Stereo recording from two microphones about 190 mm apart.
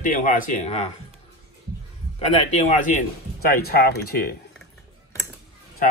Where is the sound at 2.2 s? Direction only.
40° left (ahead or behind).